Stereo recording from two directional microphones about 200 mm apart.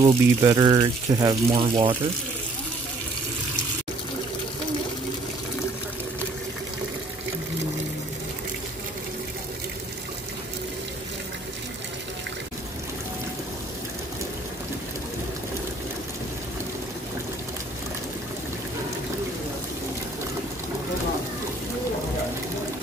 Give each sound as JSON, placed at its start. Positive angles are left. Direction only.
{"t": 0.0, "sound": "speech", "side_deg": -20}